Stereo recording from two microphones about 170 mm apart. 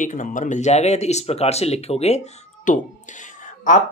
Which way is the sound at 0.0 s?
50° left (ahead or behind).